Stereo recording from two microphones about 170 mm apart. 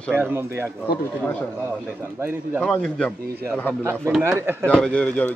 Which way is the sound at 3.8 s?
15° right (ahead or behind).